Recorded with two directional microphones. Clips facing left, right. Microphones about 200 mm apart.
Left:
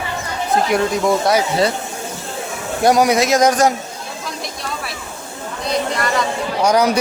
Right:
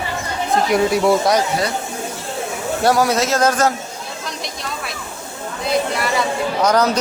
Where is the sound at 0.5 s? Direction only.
5° right (ahead or behind).